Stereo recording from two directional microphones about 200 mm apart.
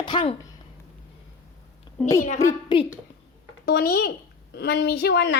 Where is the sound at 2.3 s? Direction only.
15° left (ahead or behind).